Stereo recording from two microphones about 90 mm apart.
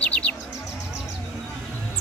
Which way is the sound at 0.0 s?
15° left (ahead or behind).